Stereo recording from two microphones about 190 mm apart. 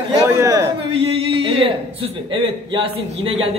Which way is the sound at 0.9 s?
30° right (ahead or behind).